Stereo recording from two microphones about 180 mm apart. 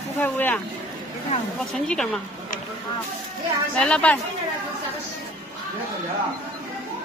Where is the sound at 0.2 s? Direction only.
10° left (ahead or behind).